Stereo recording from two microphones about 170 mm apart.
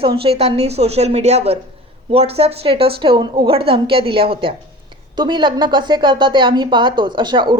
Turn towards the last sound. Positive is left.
turn(degrees=-25)  # may be behind; listen again after turning